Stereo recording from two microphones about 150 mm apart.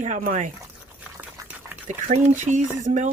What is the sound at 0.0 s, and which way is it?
Speech, 55° right (ahead or behind).